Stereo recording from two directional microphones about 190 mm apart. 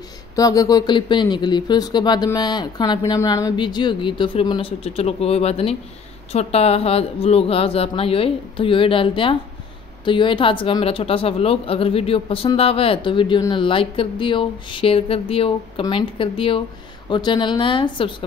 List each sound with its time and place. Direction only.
0.4 s a woman's voice: 20° left (ahead or behind)